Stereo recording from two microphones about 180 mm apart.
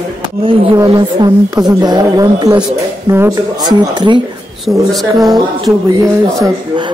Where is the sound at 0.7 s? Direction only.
20° right (ahead or behind).